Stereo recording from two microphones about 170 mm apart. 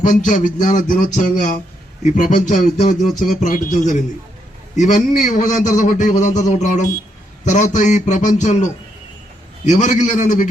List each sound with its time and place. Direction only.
0.0 s a man's voice: 50° left (ahead or behind)
4.8 s a man's voice: 45° left (ahead or behind)
9.6 s a man's voice: 45° left (ahead or behind)